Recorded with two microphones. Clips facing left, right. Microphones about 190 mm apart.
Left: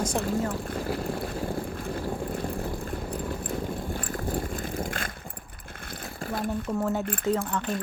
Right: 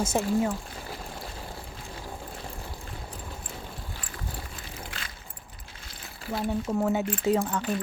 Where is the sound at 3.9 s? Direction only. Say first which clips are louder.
Left 10 dB; 50° left (ahead or behind).